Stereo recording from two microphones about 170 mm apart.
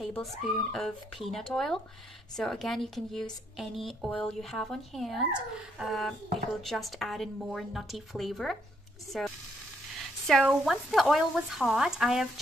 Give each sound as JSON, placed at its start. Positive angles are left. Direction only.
{"t": 0.0, "sound": "speech", "side_deg": 5}